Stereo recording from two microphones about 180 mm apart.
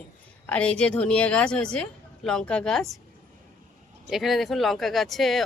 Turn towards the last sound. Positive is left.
turn(degrees=0)  # may be behind; listen again after turning